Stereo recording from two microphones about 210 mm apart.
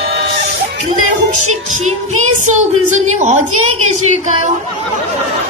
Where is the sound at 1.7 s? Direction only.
35° right (ahead or behind).